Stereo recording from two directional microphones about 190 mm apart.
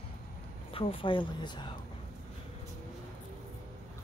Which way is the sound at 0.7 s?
30° left (ahead or behind).